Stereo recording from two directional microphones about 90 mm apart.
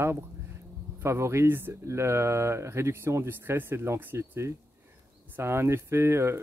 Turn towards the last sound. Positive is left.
turn(degrees=-30)  # may be behind; listen again after turning